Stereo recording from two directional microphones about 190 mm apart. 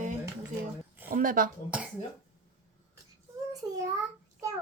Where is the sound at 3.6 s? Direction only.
20° right (ahead or behind).